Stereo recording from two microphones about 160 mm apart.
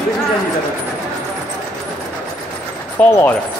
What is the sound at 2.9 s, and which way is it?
Speech, 15° left (ahead or behind).